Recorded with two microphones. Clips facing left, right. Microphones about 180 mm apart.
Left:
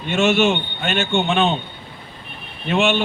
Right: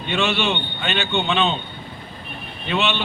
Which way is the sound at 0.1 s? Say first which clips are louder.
Left 5 dB; 45° left (ahead or behind).